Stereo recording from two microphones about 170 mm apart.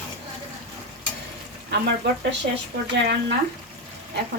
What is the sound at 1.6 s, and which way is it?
Speech, 80° right.